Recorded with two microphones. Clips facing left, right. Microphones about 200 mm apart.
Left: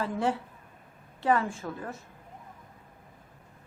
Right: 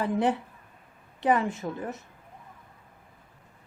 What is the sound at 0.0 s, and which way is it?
Speech, 20° right (ahead or behind).